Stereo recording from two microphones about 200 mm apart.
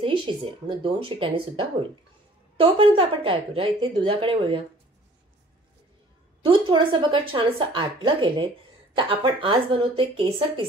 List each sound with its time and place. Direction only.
0.0 s a woman's voice: 25° right (ahead or behind)
6.4 s a woman's voice: 25° right (ahead or behind)